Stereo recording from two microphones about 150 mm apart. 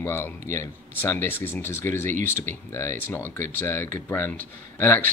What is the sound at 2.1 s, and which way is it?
Speech, 55° right (ahead or behind).